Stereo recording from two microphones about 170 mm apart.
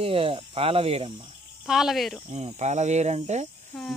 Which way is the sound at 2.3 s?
40° right (ahead or behind).